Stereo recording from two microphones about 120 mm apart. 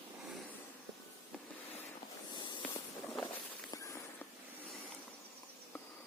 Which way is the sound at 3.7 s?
25° left (ahead or behind).